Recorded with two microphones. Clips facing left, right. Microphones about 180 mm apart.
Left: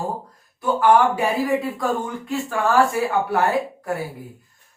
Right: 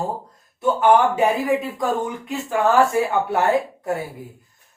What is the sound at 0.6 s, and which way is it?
Speech, 20° right (ahead or behind).